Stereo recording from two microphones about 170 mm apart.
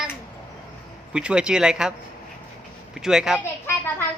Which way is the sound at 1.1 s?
5° right (ahead or behind).